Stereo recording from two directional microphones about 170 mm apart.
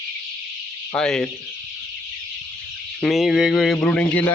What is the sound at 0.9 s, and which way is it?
Speech, 5° left (ahead or behind).